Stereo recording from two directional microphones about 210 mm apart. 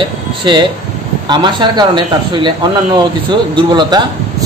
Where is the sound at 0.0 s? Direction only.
20° right (ahead or behind).